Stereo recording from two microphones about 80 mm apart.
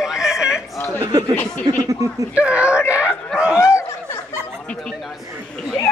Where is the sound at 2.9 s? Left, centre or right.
Centre.